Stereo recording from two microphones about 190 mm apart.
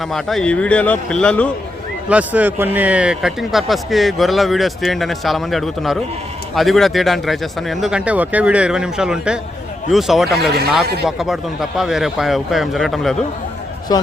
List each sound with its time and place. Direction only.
0.1 s a man's voice: centre (ahead or behind)
2.0 s a man's voice: 5° right (ahead or behind)
13.9 s speech: 20° left (ahead or behind)